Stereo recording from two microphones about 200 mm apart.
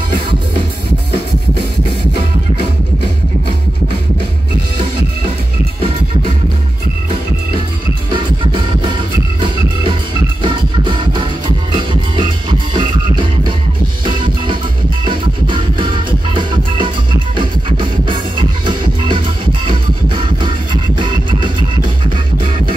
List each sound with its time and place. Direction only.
8.1 s music: 25° right (ahead or behind)